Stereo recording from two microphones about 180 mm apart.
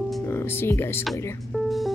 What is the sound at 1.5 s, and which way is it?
Music, centre (ahead or behind).